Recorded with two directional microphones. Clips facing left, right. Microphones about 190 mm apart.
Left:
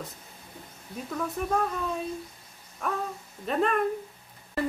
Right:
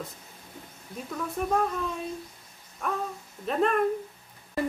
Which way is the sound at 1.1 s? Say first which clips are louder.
Right 1 dB; centre (ahead or behind).